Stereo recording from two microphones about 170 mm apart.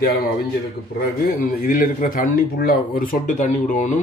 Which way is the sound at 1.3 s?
55° left (ahead or behind).